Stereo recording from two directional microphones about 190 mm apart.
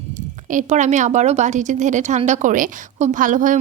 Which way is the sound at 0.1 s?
40° right (ahead or behind).